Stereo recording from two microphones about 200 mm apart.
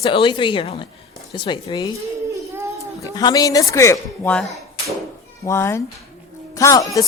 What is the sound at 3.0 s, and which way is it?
Speech, 20° left (ahead or behind).